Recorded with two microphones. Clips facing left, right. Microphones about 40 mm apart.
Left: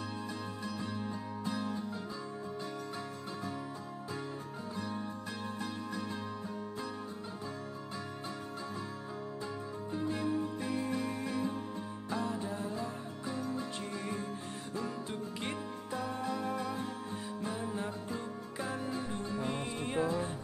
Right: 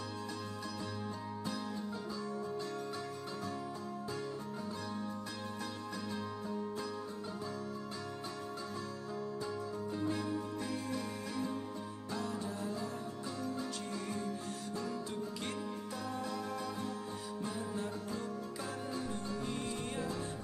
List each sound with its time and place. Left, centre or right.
9.8 s music: left